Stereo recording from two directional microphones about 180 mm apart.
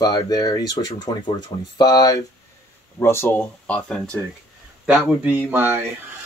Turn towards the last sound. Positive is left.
turn(degrees=-10)  # may be behind; listen again after turning